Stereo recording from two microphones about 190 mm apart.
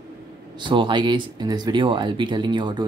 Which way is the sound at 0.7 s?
25° right (ahead or behind).